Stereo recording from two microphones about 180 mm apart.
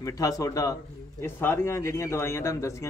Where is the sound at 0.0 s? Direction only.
20° left (ahead or behind).